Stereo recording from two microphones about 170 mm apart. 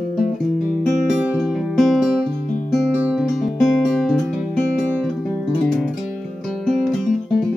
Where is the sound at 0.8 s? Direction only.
5° right (ahead or behind).